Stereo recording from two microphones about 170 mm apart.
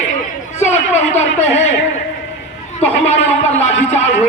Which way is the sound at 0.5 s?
40° left (ahead or behind).